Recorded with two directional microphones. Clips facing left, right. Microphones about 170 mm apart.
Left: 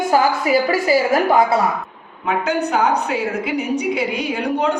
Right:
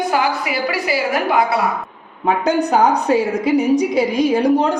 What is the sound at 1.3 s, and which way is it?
Speech, 45° left (ahead or behind).